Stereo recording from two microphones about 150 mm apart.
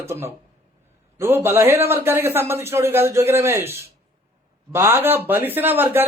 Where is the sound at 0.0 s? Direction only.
15° right (ahead or behind).